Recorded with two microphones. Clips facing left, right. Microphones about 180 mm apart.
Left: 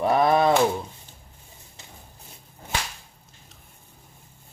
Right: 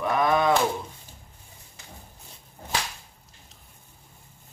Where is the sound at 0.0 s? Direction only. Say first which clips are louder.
Left 3 dB; 35° left (ahead or behind).